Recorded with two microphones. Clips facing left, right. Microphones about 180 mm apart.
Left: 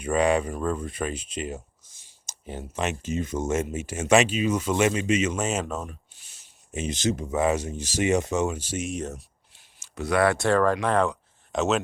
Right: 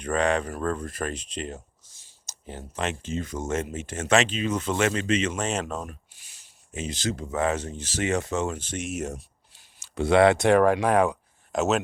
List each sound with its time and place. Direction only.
0.0 s speech: 10° left (ahead or behind)
2.2 s speech: 15° left (ahead or behind)
3.5 s speech: 10° left (ahead or behind)
6.7 s speech: 20° left (ahead or behind)
8.9 s speech: 5° right (ahead or behind)
9.8 s speech: 30° right (ahead or behind); by 11.8 s 5° right (ahead or behind)